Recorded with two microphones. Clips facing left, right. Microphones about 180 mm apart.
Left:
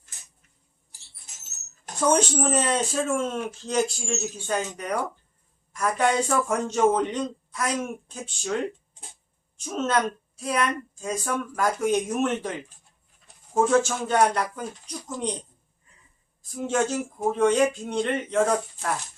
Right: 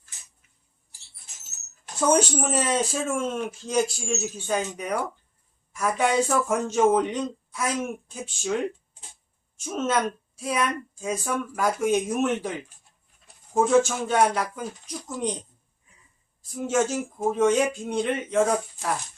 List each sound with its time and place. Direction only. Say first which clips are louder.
2.0 s a woman's voice: even; 5° right (ahead or behind)
9.6 s a woman's voice: even; 5° right (ahead or behind)
16.5 s a woman's voice: right 1 dB; 5° right (ahead or behind)